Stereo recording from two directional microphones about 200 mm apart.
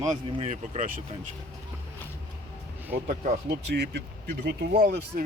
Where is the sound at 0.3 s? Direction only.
30° right (ahead or behind).